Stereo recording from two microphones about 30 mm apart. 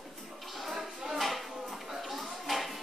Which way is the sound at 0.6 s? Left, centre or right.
Centre.